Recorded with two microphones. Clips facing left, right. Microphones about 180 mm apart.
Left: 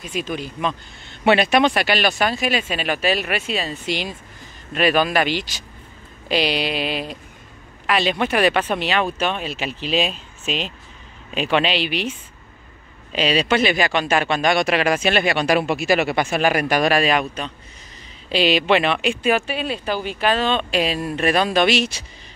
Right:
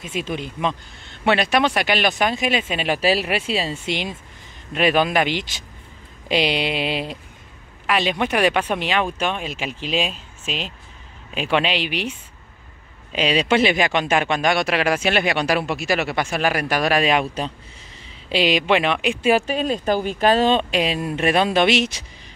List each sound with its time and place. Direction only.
0.0 s speech: 25° right (ahead or behind)
1.2 s speech: 5° left (ahead or behind); by 7.2 s 25° right (ahead or behind)
7.8 s speech: 10° right (ahead or behind)
11.3 s speech: 10° right (ahead or behind)
13.1 s speech: 15° right (ahead or behind)
15.5 s speech: centre (ahead or behind)
16.9 s speech: 20° right (ahead or behind)
18.3 s speech: 15° right (ahead or behind)
19.2 s speech: 40° right (ahead or behind)
20.7 s speech: 20° right (ahead or behind)